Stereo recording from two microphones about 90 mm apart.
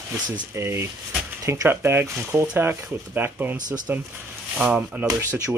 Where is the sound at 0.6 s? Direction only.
30° right (ahead or behind).